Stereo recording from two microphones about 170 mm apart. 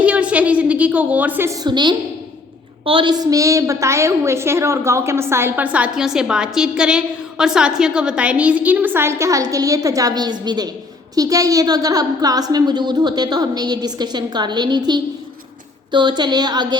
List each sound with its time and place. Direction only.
0.0 s a woman's voice: 10° right (ahead or behind)
1.6 s a woman's voice: 25° right (ahead or behind)